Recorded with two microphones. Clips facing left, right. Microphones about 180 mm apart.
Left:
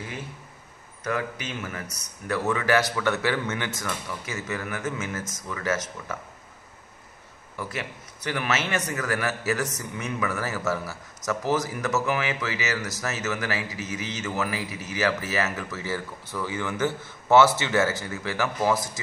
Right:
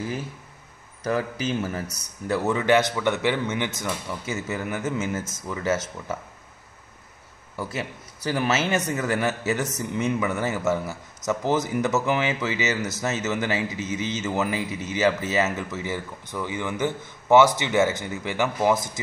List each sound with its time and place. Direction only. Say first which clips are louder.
1.0 s speech: right 4 dB; 35° right (ahead or behind)
7.5 s speech: right 3 dB; 25° right (ahead or behind)